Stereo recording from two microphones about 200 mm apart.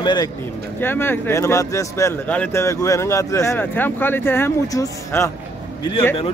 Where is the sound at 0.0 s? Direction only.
20° left (ahead or behind).